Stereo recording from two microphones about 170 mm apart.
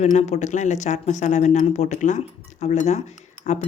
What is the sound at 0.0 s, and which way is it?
Speech, 45° left (ahead or behind).